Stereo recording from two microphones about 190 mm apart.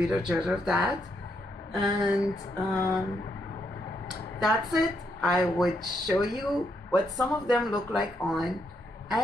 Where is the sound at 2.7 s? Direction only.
15° left (ahead or behind).